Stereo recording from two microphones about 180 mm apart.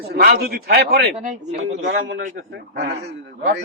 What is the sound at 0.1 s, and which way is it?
A man's voice, 60° right (ahead or behind).